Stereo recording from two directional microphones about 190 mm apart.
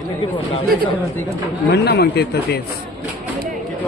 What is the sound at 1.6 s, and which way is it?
Speech, 60° left (ahead or behind).